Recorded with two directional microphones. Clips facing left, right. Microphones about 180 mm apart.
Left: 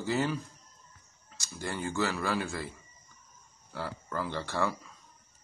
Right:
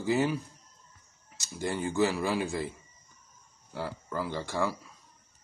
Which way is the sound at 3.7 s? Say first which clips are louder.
Right 2 dB; 15° right (ahead or behind).